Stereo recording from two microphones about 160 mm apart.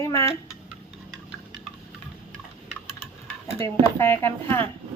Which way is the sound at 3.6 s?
15° left (ahead or behind).